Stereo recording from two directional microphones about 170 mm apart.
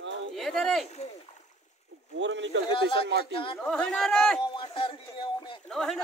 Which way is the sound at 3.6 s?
5° left (ahead or behind).